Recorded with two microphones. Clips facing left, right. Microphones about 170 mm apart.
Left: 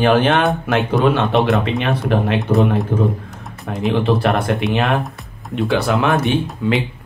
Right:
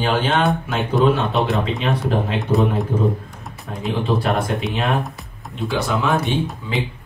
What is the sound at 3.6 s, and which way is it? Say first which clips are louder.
Speech: left 5 dB; 65° left (ahead or behind).